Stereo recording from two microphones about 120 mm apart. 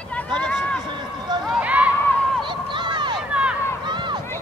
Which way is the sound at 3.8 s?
40° right (ahead or behind).